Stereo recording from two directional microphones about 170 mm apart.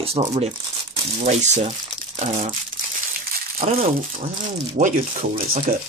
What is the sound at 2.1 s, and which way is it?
Crumpling, 40° right (ahead or behind).